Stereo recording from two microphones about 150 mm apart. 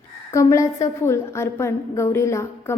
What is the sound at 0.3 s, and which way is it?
A woman's voice, 20° left (ahead or behind).